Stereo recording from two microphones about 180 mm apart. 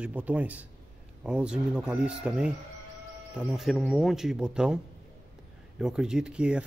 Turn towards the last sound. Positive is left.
turn(degrees=-5)  # may be behind; listen again after turning